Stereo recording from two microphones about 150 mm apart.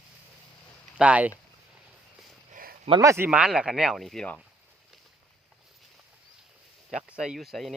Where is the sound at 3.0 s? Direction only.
15° right (ahead or behind).